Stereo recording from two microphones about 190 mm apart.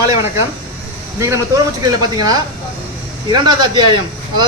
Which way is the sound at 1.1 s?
15° right (ahead or behind).